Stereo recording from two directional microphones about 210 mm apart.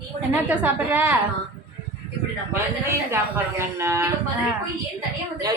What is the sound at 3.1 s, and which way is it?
Speech, 10° right (ahead or behind).